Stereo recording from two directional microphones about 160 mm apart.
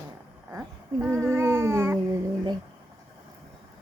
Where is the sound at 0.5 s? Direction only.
5° right (ahead or behind).